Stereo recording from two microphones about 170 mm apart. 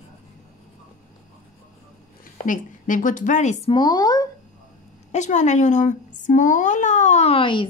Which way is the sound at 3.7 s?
25° left (ahead or behind).